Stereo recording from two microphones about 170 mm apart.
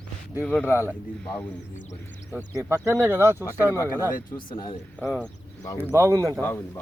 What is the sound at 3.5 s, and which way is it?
Speech, 15° left (ahead or behind).